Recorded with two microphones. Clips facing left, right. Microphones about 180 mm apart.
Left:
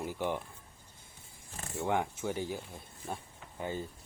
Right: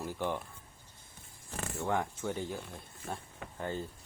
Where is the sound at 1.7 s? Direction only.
15° left (ahead or behind).